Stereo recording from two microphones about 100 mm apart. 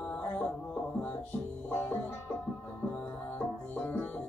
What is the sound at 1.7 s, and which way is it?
Music, 20° left (ahead or behind).